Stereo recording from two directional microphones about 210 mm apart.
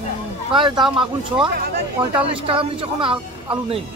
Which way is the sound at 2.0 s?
5° right (ahead or behind).